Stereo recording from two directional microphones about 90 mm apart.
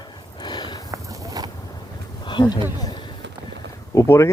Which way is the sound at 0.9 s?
45° right (ahead or behind).